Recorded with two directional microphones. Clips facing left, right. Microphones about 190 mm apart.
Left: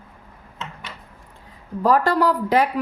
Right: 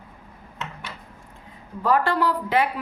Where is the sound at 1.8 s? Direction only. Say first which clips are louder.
Left 3 dB; 40° left (ahead or behind).